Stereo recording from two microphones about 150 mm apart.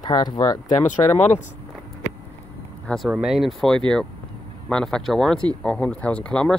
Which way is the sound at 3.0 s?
5° right (ahead or behind).